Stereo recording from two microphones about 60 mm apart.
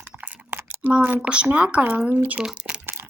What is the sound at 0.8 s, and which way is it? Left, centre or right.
Speech, right.